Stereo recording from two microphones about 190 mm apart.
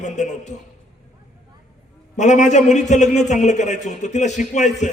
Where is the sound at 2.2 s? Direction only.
40° left (ahead or behind).